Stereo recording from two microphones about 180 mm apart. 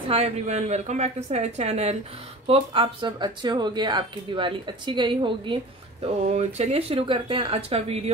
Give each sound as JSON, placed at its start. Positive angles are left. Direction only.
{"t": 0.1, "sound": "a woman's voice", "side_deg": -35}